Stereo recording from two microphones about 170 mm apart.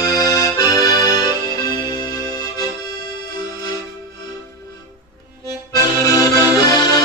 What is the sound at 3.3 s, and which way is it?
Music, 20° left (ahead or behind).